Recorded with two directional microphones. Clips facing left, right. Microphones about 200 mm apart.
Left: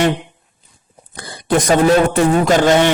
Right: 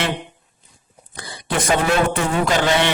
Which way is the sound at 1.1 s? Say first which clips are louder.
Left 8 dB; 45° left (ahead or behind).